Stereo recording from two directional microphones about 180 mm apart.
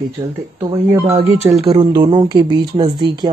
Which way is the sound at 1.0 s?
35° right (ahead or behind).